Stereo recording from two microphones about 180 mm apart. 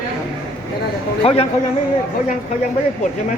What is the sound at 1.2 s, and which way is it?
Speech, 35° left (ahead or behind).